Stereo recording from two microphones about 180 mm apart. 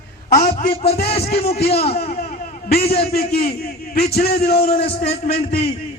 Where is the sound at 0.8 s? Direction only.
60° left (ahead or behind).